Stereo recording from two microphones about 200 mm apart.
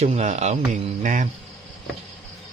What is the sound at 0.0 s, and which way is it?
Speech, 35° right (ahead or behind).